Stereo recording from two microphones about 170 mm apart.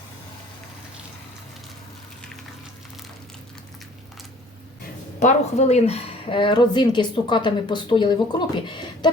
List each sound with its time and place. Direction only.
5.2 s a woman's voice: 40° left (ahead or behind)